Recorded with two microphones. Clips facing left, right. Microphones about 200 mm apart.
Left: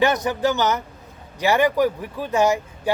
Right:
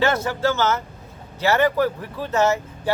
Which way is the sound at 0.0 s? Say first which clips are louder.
Left 1 dB; 15° left (ahead or behind).